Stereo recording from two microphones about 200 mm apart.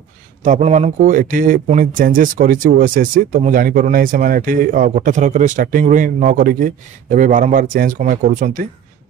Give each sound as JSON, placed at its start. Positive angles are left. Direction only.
{"t": 0.4, "sound": "speech", "side_deg": -35}